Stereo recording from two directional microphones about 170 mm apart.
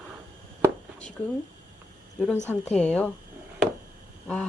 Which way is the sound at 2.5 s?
10° left (ahead or behind).